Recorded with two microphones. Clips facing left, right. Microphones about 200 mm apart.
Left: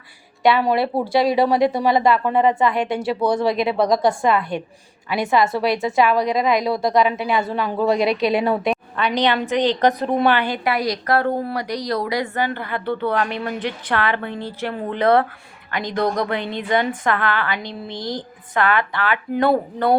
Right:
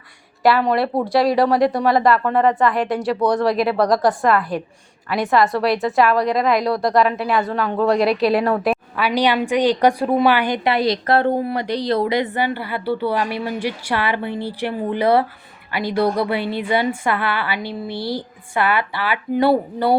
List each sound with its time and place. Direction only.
0.4 s a woman's voice: centre (ahead or behind)